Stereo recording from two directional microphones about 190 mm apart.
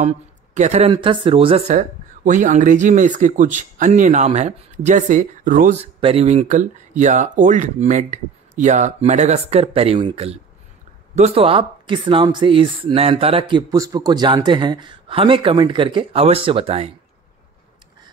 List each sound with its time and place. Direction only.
0.6 s speech: 35° right (ahead or behind)
1.8 s speech: 45° right (ahead or behind)